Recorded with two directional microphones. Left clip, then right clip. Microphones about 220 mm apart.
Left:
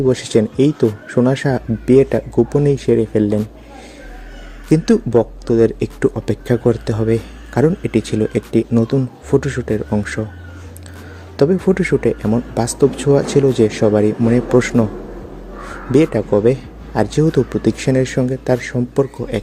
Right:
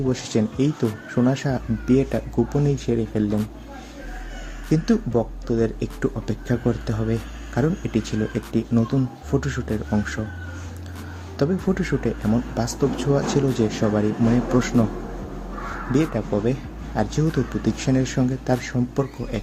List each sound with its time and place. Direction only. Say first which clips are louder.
0.1 s speech: left 9 dB; 35° left (ahead or behind)
4.7 s speech: left 8 dB; 40° left (ahead or behind)
11.3 s speech: left 9 dB; 35° left (ahead or behind)
15.9 s speech: left 10 dB; 40° left (ahead or behind)